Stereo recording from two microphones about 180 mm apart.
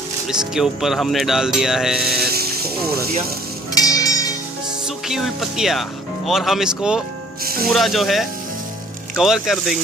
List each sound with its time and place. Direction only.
0.3 s speech: 5° right (ahead or behind)
2.1 s music: 60° right (ahead or behind)
3.7 s music: 20° left (ahead or behind)
4.8 s speech: centre (ahead or behind)